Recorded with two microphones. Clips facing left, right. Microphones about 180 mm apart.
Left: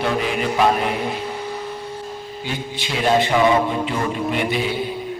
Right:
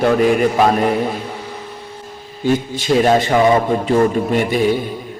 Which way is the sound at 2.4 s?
45° right (ahead or behind).